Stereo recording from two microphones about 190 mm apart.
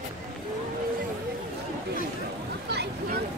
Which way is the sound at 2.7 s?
60° right (ahead or behind).